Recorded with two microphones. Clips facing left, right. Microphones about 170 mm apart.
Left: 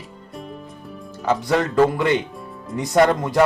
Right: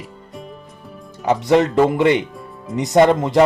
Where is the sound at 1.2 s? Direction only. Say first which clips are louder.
Right 5 dB; 20° right (ahead or behind).